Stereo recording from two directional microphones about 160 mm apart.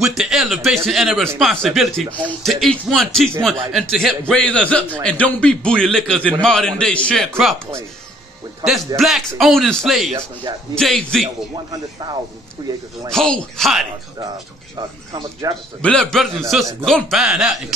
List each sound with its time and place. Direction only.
0.1 s a man's voice: centre (ahead or behind)
8.6 s speech: centre (ahead or behind)
11.7 s speech: 30° right (ahead or behind)
13.1 s speech: 5° left (ahead or behind)
15.4 s speech: 20° right (ahead or behind)
15.8 s speech: 5° left (ahead or behind)